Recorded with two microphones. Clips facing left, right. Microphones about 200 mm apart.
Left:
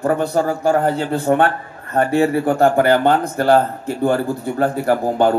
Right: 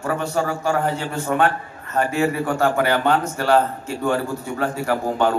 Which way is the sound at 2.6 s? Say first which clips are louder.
Left 5 dB; 50° left (ahead or behind).